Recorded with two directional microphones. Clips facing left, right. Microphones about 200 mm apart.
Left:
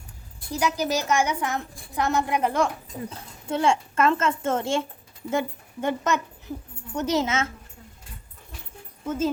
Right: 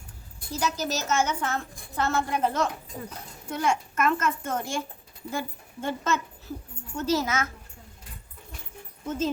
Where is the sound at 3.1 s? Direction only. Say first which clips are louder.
Left 6 dB; 25° left (ahead or behind).